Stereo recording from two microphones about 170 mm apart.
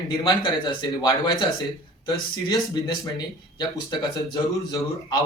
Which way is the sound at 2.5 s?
25° left (ahead or behind).